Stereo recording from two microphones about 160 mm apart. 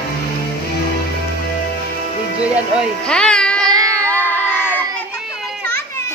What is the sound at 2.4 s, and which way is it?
Speech, 10° right (ahead or behind).